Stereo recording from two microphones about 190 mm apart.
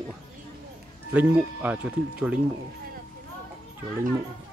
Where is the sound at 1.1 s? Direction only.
10° right (ahead or behind).